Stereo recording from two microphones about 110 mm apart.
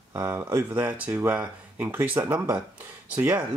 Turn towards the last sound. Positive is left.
turn(degrees=-20)  # may be behind; listen again after turning